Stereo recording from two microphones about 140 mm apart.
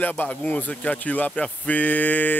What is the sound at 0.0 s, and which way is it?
Speech, 10° left (ahead or behind).